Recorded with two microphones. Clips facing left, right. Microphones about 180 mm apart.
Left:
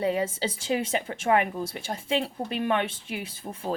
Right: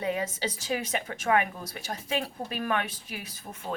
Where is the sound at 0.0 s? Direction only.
30° left (ahead or behind).